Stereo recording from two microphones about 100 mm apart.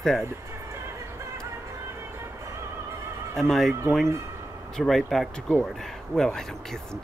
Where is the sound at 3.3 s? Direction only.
Centre (ahead or behind).